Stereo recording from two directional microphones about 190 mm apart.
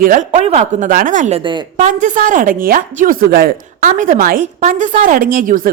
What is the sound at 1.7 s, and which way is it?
A woman's voice, 40° right (ahead or behind).